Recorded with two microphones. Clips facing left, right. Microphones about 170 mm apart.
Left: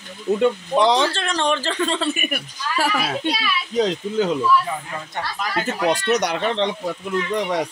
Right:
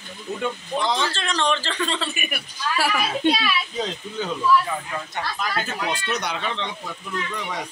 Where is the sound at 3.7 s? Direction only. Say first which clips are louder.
Left 8 dB; 90° left.